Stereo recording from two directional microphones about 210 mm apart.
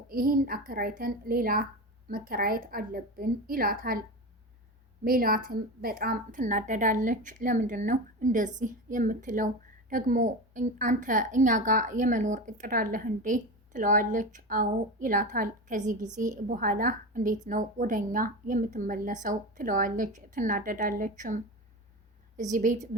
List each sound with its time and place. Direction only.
0.1 s a woman's voice: 45° right (ahead or behind)
5.0 s a woman's voice: 45° right (ahead or behind)